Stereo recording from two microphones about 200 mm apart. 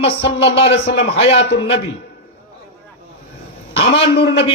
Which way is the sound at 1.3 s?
60° left (ahead or behind).